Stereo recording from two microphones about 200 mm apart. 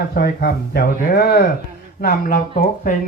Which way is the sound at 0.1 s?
50° left (ahead or behind).